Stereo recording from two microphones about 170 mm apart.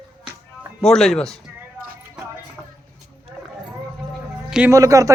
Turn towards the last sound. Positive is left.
turn(degrees=-20)  # may be behind; listen again after turning